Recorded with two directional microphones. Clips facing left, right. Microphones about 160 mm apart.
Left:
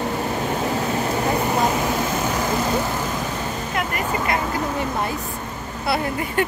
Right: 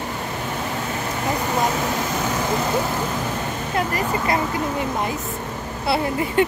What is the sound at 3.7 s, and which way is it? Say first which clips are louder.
Speech: right 3 dB; 30° right (ahead or behind).